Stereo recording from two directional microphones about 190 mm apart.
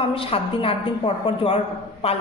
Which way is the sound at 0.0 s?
30° left (ahead or behind).